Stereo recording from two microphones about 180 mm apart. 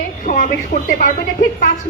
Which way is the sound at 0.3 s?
45° left (ahead or behind).